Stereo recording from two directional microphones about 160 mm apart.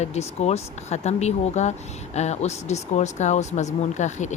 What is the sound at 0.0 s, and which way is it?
Speech, 45° left (ahead or behind).